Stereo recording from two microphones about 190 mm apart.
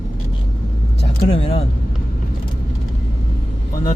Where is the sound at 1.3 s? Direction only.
30° left (ahead or behind).